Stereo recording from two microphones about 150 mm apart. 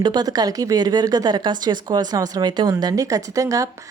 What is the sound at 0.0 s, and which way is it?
Speech, 30° right (ahead or behind).